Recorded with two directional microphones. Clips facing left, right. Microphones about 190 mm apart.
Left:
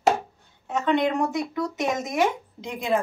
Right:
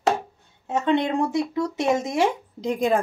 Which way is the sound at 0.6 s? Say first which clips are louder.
Right 1 dB; 25° right (ahead or behind).